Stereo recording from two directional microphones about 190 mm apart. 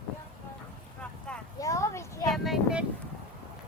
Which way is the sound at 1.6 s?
15° left (ahead or behind).